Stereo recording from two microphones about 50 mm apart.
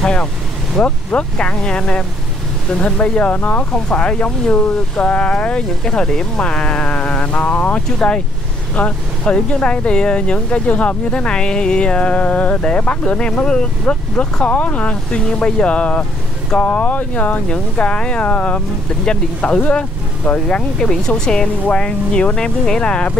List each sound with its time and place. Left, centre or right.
0.0 s vehicle: centre
0.8 s speech: left
3.9 s speech: left
8.0 s speech: left
17.5 s speech: left
19.0 s speech: centre